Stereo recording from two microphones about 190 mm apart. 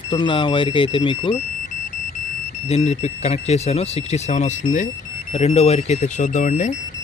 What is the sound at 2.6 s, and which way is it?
Speech, 35° left (ahead or behind).